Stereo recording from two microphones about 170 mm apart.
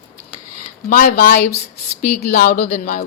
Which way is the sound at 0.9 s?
55° left (ahead or behind).